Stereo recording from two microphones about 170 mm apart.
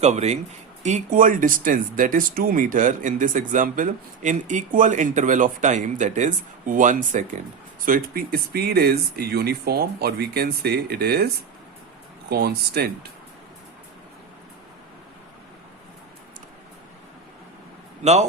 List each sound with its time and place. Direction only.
0.0 s speech: 40° right (ahead or behind)
7.9 s speech: 55° right (ahead or behind)
12.3 s speech: 70° right (ahead or behind)
18.0 s speech: 40° right (ahead or behind)